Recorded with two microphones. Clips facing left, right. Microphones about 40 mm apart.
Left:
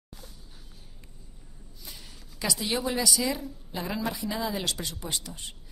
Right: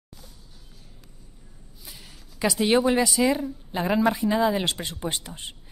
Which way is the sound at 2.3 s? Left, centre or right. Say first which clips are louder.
Right 9 dB; right.